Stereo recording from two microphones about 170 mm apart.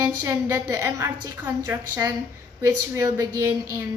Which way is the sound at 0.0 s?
20° right (ahead or behind).